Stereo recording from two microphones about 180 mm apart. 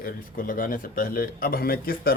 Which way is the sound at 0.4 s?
50° left (ahead or behind).